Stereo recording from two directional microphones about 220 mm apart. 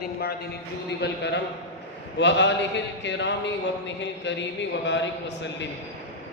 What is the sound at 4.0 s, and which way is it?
A man's voice, 55° left (ahead or behind).